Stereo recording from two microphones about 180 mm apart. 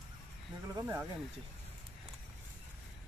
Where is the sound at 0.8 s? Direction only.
15° right (ahead or behind).